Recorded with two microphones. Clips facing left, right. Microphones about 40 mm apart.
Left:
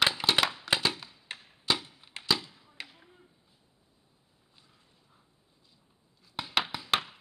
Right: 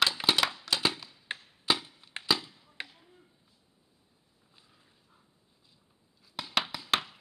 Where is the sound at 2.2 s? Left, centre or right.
Centre.